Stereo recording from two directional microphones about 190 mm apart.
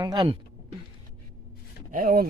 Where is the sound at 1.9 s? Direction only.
50° right (ahead or behind).